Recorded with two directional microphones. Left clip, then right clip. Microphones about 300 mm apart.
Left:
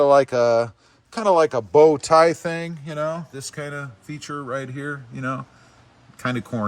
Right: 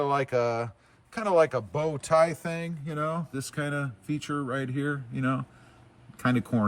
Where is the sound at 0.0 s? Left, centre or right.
Centre; by 3.1 s left.